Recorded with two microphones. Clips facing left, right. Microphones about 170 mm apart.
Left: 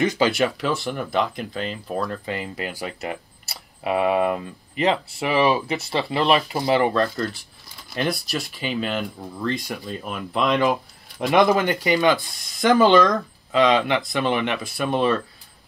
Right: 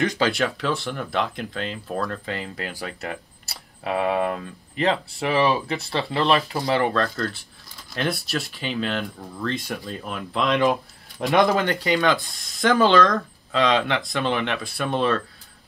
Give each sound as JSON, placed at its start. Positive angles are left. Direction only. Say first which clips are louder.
{"t": 0.6, "sound": "speech", "louder": "left 2 dB", "side_deg": 0}